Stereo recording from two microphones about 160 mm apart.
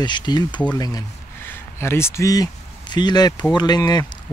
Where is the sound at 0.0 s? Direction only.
25° left (ahead or behind).